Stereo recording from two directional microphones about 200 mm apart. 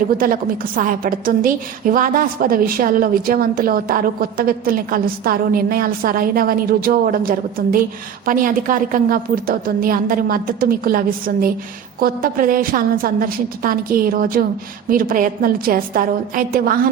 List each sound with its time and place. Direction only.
0.8 s a woman's voice: 45° right (ahead or behind)